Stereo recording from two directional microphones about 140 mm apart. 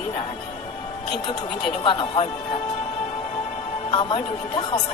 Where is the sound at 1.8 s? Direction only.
35° left (ahead or behind).